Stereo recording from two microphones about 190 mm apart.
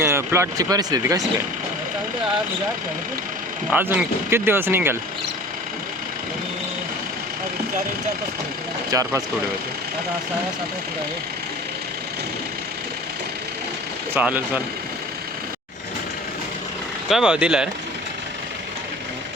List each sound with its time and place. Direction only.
0.0 s speech: 15° right (ahead or behind)
3.7 s speech: 10° right (ahead or behind)
8.9 s speech: 15° right (ahead or behind)
14.1 s speech: 10° right (ahead or behind)
17.1 s speech: 5° right (ahead or behind)